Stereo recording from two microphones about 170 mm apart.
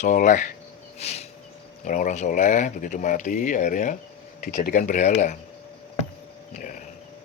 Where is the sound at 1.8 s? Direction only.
45° left (ahead or behind).